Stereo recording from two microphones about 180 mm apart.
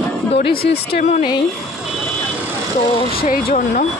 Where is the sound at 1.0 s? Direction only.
45° left (ahead or behind).